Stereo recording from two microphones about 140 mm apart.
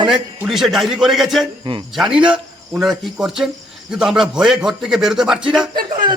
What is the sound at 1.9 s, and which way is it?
Speech, 5° right (ahead or behind).